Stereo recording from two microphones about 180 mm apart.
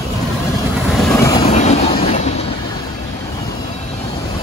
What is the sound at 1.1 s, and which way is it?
Train, 15° left (ahead or behind).